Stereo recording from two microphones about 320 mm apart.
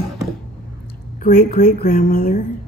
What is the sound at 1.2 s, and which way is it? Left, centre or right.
Speech, left.